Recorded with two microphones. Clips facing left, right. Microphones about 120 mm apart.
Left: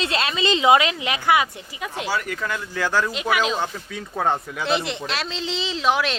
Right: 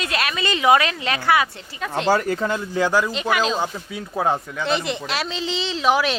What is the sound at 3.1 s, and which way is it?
Speech, 5° left (ahead or behind).